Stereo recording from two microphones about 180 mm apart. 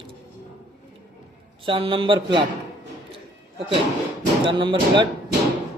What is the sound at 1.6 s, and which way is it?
Speech, 30° right (ahead or behind).